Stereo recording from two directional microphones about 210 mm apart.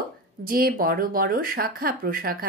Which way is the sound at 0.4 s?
45° right (ahead or behind).